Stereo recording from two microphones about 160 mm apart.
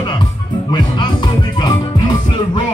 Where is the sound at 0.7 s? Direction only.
30° left (ahead or behind).